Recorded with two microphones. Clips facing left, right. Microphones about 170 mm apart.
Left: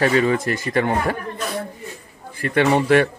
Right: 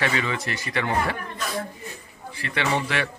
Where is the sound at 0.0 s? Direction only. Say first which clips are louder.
Left 9 dB; 40° left (ahead or behind).